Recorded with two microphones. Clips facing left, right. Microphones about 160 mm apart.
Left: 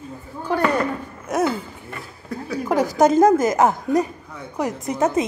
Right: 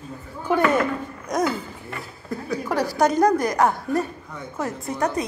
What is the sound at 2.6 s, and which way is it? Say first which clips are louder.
A woman's voice: left 4 dB; 20° left (ahead or behind).